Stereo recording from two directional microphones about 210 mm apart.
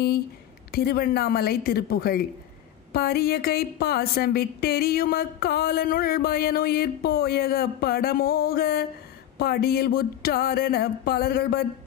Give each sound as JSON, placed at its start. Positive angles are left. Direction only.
{"t": 0.7, "sound": "a woman's voice", "side_deg": 45}